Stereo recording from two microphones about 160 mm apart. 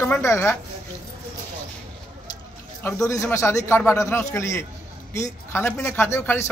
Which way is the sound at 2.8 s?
20° left (ahead or behind).